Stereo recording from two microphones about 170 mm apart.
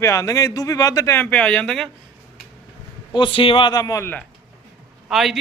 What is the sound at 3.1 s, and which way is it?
A man's voice, 30° left (ahead or behind).